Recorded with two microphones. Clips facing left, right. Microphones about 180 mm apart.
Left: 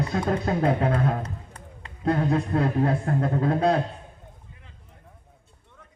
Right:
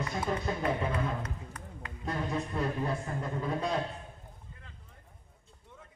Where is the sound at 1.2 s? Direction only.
30° left (ahead or behind).